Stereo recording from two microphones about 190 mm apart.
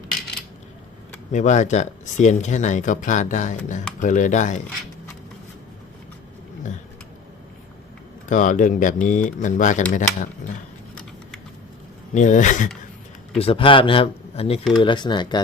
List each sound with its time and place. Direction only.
1.3 s speech: 40° left (ahead or behind)
8.3 s speech: 40° left (ahead or behind)
12.1 s speech: 40° left (ahead or behind)
13.4 s a man's voice: 30° left (ahead or behind)